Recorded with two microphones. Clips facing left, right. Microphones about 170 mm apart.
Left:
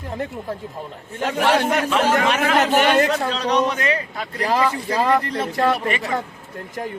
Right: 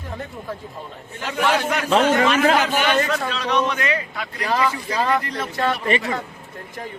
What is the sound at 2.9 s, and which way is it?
A man's voice, 35° left (ahead or behind).